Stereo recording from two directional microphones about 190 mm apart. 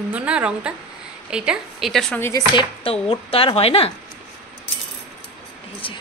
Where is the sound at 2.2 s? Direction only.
15° left (ahead or behind).